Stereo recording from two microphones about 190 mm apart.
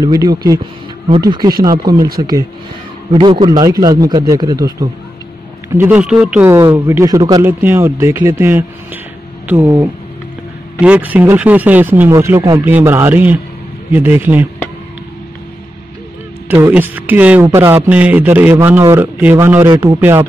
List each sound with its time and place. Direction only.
0.0 s a man's voice: 20° right (ahead or behind)
3.1 s a man's voice: 25° right (ahead or behind)
5.7 s speech: 10° right (ahead or behind)
10.8 s speech: 10° right (ahead or behind)
16.4 s speech: 10° right (ahead or behind)
19.7 s a man's voice: 20° right (ahead or behind)
20.0 s speech: 10° right (ahead or behind)